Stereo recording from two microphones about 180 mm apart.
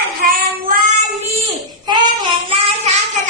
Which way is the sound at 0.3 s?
50° right (ahead or behind).